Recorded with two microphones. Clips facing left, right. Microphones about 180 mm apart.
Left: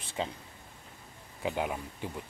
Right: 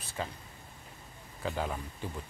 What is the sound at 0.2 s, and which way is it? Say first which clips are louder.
Speech: left 3 dB; 20° left (ahead or behind).